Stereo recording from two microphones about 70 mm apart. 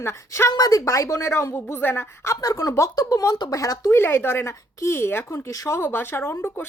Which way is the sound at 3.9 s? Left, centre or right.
Left.